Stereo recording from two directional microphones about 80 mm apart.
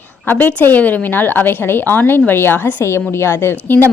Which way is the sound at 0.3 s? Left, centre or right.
Left.